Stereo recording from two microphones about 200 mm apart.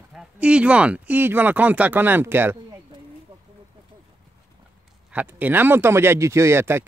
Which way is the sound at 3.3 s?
25° right (ahead or behind).